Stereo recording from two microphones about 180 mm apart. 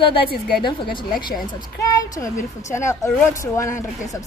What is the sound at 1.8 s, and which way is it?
A woman's voice, 20° left (ahead or behind).